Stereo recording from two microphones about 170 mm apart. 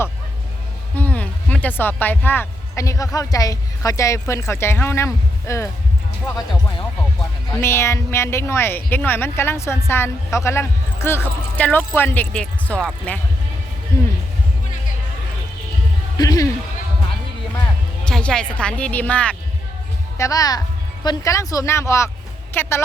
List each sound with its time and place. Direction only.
0.9 s speech: 10° left (ahead or behind)
13.9 s a sound: 15° left (ahead or behind)
16.1 s music: 20° left (ahead or behind)
18.0 s a woman's voice: 5° left (ahead or behind)
20.1 s speech: 20° left (ahead or behind)